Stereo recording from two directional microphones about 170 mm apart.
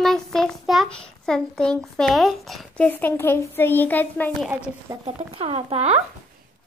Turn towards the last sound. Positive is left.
turn(degrees=-40)  # may be behind; listen again after turning